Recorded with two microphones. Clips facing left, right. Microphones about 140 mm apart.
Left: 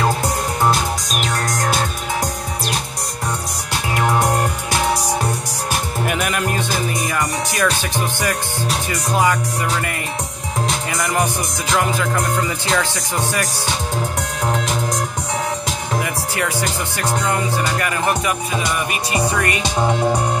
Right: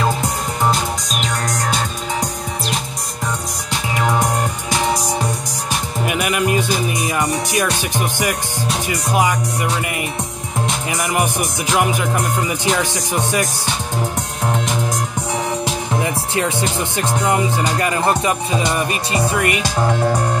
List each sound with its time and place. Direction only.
6.0 s music: 5° right (ahead or behind)
6.9 s music: 20° right (ahead or behind)
9.1 s speech: 15° right (ahead or behind)
11.7 s speech: 15° right (ahead or behind)
16.0 s music: 25° right (ahead or behind)
19.3 s speech: 15° right (ahead or behind)
19.6 s speech: 20° left (ahead or behind)